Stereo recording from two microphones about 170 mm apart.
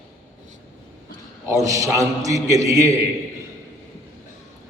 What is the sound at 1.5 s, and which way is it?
A man's voice, 20° right (ahead or behind).